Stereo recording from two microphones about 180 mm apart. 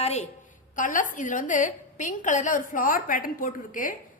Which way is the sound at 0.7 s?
45° left (ahead or behind).